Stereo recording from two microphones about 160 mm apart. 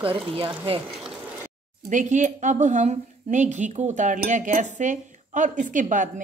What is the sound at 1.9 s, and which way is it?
A woman's voice, 50° right (ahead or behind).